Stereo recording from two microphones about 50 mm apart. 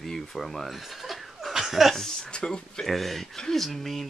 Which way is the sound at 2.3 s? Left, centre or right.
Centre.